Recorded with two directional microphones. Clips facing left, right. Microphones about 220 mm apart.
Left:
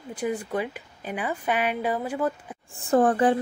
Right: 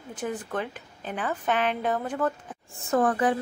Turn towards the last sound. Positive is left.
turn(degrees=30)  # may be behind; listen again after turning